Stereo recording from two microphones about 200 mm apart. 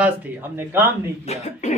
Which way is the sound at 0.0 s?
10° right (ahead or behind).